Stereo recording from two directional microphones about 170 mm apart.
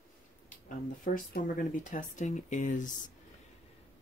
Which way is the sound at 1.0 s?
55° left (ahead or behind).